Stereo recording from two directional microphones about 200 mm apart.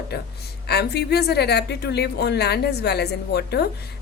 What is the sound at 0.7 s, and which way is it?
A woman's voice, 55° left (ahead or behind).